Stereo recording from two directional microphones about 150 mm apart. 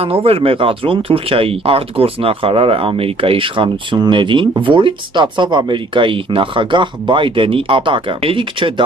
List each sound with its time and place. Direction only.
0.0 s speech: 40° right (ahead or behind)